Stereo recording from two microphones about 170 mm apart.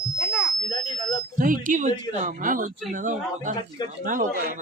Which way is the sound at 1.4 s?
50° right (ahead or behind).